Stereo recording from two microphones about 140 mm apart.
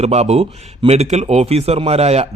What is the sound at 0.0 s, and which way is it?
A man's voice, 50° right (ahead or behind).